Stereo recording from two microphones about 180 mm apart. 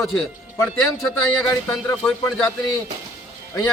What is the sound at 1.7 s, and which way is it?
Speech, 5° left (ahead or behind).